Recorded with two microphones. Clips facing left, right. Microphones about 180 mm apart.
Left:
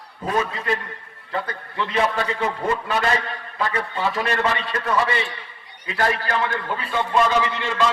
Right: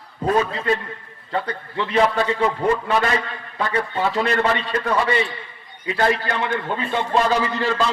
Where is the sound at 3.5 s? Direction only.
30° right (ahead or behind).